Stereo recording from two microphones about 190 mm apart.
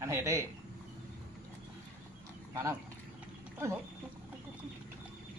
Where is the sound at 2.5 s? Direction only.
15° right (ahead or behind).